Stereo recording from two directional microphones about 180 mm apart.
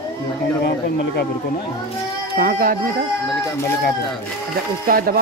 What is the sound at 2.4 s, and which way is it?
Speech, 50° right (ahead or behind).